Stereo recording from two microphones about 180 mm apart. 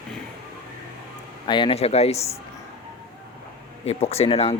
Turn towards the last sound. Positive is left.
turn(degrees=35)  # may be behind; listen again after turning